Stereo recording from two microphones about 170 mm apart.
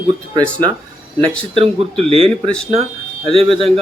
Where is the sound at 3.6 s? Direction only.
35° right (ahead or behind).